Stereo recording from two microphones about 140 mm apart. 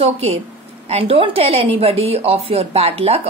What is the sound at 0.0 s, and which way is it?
Speech, 45° right (ahead or behind).